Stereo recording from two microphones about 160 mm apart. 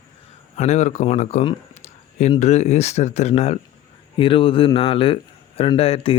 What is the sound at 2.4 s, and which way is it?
Speech, 45° left (ahead or behind).